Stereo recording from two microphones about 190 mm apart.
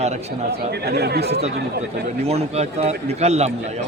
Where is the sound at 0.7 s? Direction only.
60° right (ahead or behind).